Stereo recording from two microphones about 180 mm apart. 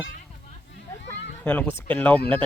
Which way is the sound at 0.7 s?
75° left (ahead or behind).